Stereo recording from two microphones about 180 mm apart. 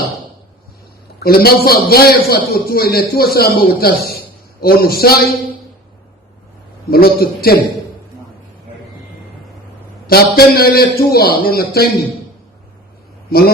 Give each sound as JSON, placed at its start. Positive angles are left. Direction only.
{"t": 1.2, "sound": "a man's voice", "side_deg": 60}
{"t": 6.9, "sound": "a man's voice", "side_deg": 60}
{"t": 10.1, "sound": "a man's voice", "side_deg": 60}